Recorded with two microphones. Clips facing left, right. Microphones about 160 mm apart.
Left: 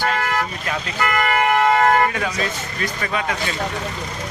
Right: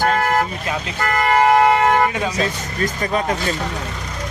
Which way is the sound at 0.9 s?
40° right (ahead or behind).